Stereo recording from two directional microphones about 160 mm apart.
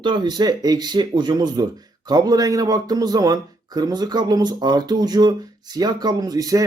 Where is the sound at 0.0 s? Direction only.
30° right (ahead or behind).